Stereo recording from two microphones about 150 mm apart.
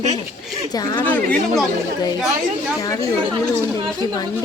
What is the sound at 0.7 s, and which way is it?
Speech, 25° left (ahead or behind).